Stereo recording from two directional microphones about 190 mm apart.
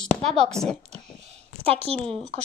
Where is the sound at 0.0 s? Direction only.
Centre (ahead or behind).